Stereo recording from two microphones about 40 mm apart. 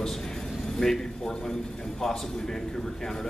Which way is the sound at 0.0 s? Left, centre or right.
Centre.